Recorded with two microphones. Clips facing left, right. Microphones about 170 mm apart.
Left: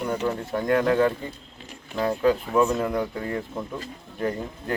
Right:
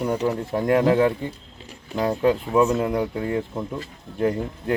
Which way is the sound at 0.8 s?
20° right (ahead or behind).